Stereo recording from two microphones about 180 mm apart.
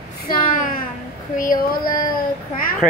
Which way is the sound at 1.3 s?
50° left (ahead or behind).